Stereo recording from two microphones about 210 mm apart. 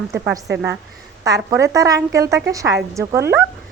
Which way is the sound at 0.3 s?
5° right (ahead or behind).